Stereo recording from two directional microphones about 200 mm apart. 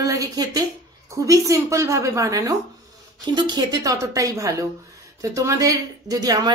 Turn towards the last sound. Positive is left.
turn(degrees=-20)  # may be behind; listen again after turning